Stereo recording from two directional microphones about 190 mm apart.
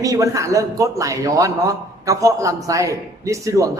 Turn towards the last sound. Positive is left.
turn(degrees=-15)  # may be behind; listen again after turning